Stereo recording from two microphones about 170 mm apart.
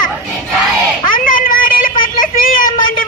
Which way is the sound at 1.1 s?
55° left (ahead or behind).